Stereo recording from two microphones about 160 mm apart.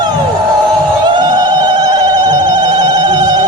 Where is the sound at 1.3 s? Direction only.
25° right (ahead or behind).